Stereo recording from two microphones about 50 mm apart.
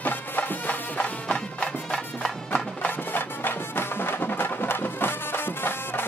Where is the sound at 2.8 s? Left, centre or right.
Left.